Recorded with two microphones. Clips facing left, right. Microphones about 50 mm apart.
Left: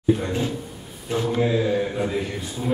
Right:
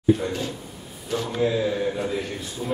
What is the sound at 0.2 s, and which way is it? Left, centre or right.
A man's voice, left.